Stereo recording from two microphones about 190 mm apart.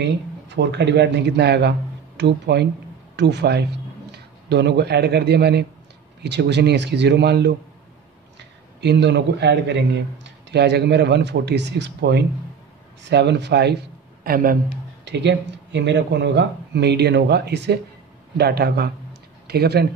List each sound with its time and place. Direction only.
0.0 s a man's voice: 65° right (ahead or behind)
8.8 s a man's voice: 65° right (ahead or behind)
14.2 s speech: 50° right (ahead or behind)
15.0 s a man's voice: 65° right (ahead or behind)